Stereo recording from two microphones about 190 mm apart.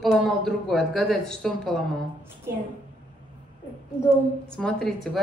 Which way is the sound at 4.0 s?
45° right (ahead or behind).